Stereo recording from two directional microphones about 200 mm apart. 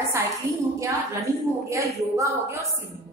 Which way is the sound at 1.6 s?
15° right (ahead or behind).